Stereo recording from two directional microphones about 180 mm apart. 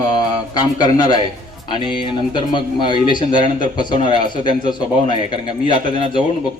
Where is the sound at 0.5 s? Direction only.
25° left (ahead or behind).